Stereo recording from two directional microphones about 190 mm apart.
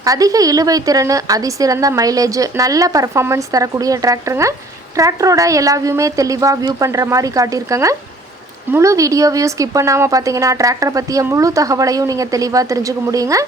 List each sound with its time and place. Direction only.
0.0 s a woman's voice: 20° right (ahead or behind)